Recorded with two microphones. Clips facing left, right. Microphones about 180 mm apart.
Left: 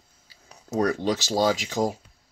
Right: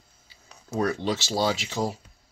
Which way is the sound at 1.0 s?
45° left (ahead or behind).